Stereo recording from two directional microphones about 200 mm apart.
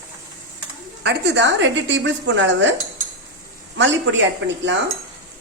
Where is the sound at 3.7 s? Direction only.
65° right (ahead or behind).